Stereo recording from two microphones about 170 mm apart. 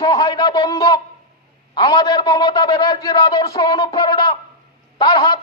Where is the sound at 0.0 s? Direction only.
20° left (ahead or behind).